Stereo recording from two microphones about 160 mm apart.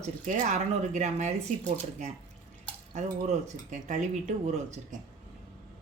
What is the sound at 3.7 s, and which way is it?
Speech, 50° right (ahead or behind).